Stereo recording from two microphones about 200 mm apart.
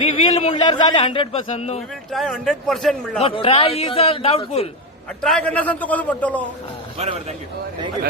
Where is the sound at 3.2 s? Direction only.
25° left (ahead or behind).